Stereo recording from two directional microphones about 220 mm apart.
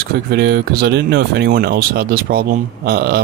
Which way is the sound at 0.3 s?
50° right (ahead or behind).